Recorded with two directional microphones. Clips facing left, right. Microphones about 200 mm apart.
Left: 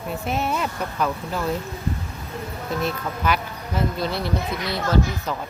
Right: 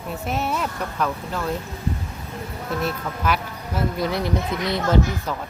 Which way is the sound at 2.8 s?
Centre (ahead or behind).